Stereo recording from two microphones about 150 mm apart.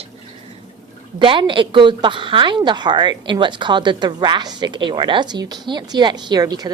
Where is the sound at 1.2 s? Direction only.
35° right (ahead or behind).